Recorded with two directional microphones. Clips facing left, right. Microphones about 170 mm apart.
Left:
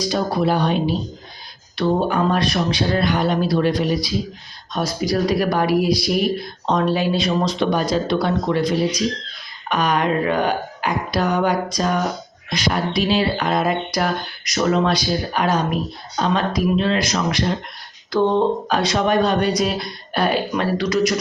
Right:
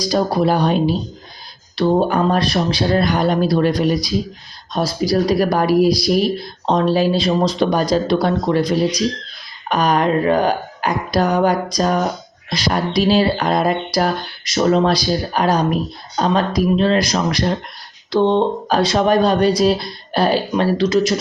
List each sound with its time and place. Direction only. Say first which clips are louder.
0.0 s speech: right 3 dB; 40° right (ahead or behind)